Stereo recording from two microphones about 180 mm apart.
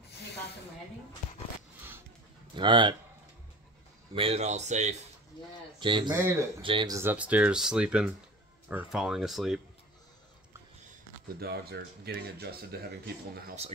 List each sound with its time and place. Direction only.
2.5 s speech: 25° right (ahead or behind)
4.1 s speech: 30° right (ahead or behind)
5.8 s speech: 25° right (ahead or behind)
7.0 s speech: 10° right (ahead or behind)
11.3 s speech: 60° right (ahead or behind)